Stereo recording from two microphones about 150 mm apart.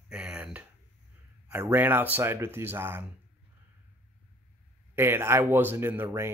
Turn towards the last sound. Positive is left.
turn(degrees=-15)  # may be behind; listen again after turning